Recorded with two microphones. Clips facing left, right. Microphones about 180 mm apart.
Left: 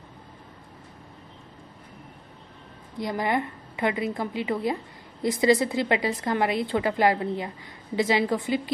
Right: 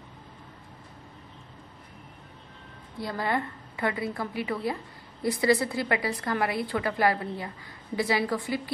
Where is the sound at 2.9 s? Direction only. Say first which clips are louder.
Left 3 dB; 15° left (ahead or behind).